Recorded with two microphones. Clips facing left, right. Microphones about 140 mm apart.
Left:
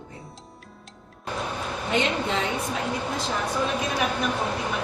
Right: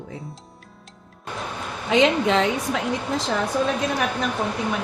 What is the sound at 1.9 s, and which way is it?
Speech, 90° right.